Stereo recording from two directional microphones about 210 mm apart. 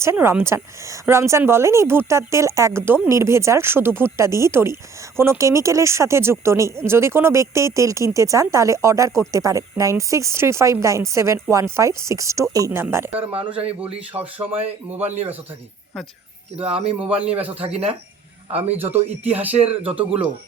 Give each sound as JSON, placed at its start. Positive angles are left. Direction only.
{"t": 0.0, "sound": "speech", "side_deg": -10}
{"t": 13.1, "sound": "speech", "side_deg": -25}
{"t": 14.1, "sound": "speech", "side_deg": -10}
{"t": 16.6, "sound": "speech", "side_deg": -30}
{"t": 18.7, "sound": "speech", "side_deg": -10}